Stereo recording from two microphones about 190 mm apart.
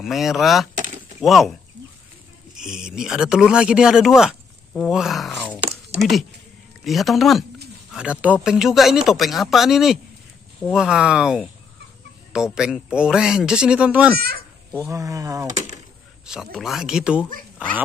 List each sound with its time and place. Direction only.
0.0 s speech: centre (ahead or behind); by 15.4 s 15° right (ahead or behind)
16.3 s speech: centre (ahead or behind)